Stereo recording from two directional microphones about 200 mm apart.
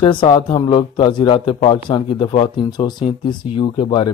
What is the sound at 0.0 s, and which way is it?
Speech, 25° left (ahead or behind).